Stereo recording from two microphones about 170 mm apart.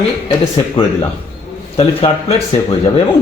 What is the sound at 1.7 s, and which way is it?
Speech, 35° left (ahead or behind).